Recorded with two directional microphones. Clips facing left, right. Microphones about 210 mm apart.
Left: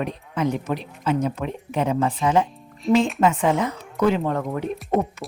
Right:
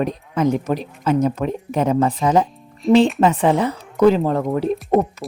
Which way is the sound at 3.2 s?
35° right (ahead or behind).